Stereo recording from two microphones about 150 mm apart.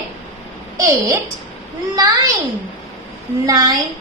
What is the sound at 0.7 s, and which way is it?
Speech, 20° right (ahead or behind).